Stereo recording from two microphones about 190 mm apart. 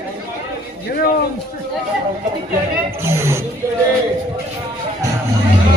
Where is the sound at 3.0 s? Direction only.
15° right (ahead or behind).